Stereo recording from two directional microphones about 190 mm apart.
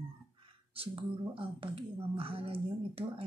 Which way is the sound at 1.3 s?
30° right (ahead or behind).